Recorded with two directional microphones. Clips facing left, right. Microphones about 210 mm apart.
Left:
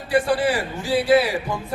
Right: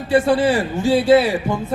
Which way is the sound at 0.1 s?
25° right (ahead or behind).